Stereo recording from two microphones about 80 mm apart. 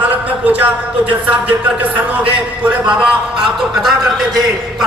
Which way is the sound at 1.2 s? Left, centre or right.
Centre.